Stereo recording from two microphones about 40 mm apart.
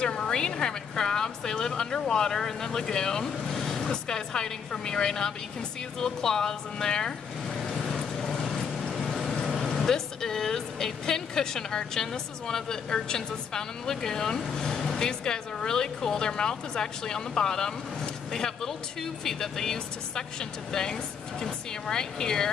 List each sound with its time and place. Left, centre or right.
0.0 s speech: left
7.4 s vehicle: centre
8.5 s speech: centre